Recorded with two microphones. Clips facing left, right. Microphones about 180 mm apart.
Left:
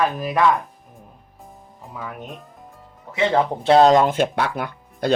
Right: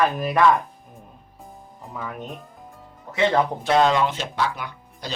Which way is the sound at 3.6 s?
35° left (ahead or behind).